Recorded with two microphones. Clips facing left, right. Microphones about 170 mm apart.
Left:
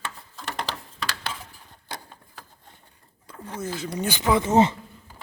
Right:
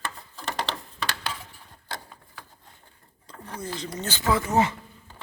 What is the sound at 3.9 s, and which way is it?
Speech, 10° left (ahead or behind).